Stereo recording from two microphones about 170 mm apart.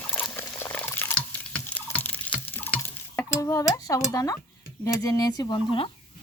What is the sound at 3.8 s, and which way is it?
Speech, 20° left (ahead or behind).